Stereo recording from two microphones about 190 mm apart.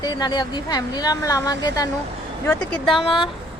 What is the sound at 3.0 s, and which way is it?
Speech, 25° left (ahead or behind).